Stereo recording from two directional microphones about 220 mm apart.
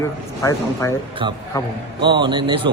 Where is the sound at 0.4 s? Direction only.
15° left (ahead or behind).